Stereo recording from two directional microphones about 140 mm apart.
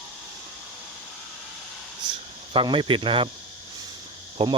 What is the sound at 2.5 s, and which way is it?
Speech, 40° right (ahead or behind).